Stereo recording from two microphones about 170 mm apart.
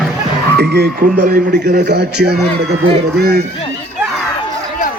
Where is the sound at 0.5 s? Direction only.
75° right (ahead or behind).